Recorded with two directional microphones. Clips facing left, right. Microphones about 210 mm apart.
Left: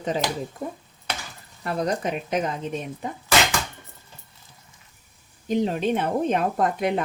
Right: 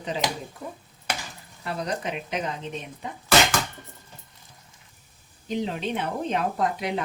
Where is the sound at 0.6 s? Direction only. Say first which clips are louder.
Left 3 dB; 50° left (ahead or behind).